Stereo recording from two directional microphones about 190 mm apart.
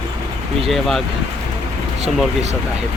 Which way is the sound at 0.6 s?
Centre (ahead or behind).